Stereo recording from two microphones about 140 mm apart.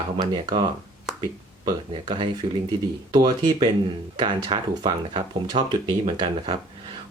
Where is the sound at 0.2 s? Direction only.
30° right (ahead or behind).